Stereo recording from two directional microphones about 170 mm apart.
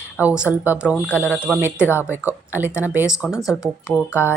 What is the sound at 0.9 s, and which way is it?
Speech, 10° left (ahead or behind).